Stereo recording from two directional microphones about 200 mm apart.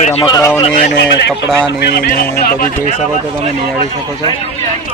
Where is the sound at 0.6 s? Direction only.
35° left (ahead or behind).